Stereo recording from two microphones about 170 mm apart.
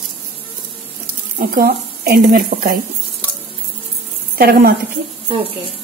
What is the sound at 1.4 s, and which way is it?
A woman's voice, 65° right (ahead or behind).